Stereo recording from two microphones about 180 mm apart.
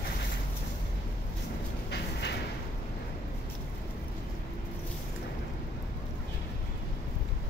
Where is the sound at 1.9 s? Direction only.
70° left (ahead or behind).